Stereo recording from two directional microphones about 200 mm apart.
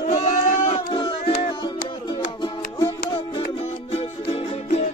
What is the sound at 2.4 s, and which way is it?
Music, 20° left (ahead or behind).